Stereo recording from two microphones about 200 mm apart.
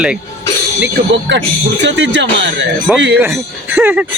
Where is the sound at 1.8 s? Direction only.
60° right (ahead or behind).